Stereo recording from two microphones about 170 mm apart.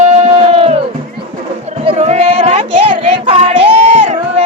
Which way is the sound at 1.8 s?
40° right (ahead or behind).